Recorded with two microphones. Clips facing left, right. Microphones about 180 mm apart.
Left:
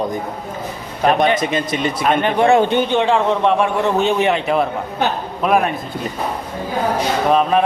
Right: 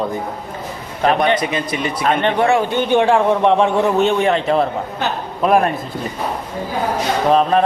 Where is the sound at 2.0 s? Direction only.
10° left (ahead or behind).